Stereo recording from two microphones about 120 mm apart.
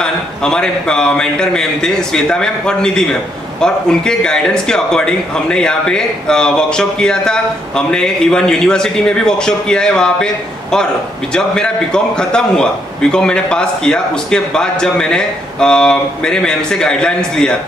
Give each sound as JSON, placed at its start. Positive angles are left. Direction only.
{"t": 0.0, "sound": "a man's voice", "side_deg": 5}